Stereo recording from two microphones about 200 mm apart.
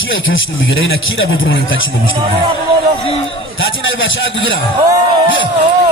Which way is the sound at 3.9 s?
70° left (ahead or behind).